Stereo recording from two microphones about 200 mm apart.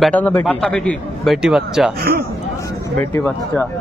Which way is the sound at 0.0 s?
5° left (ahead or behind).